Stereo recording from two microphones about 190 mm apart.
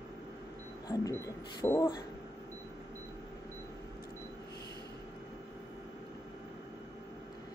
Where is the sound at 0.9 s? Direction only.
20° left (ahead or behind).